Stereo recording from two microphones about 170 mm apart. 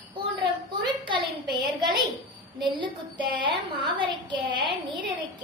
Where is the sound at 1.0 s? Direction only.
30° right (ahead or behind).